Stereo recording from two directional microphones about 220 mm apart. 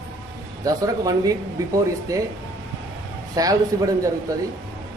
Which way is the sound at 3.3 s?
15° right (ahead or behind).